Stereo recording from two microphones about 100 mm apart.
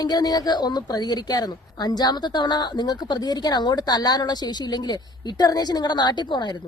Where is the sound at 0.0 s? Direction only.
40° left (ahead or behind).